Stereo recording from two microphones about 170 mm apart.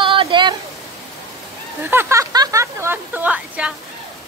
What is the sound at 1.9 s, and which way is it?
Speech, 15° right (ahead or behind).